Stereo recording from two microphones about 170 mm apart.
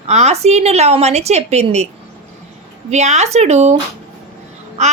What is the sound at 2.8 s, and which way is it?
Speech, 40° right (ahead or behind).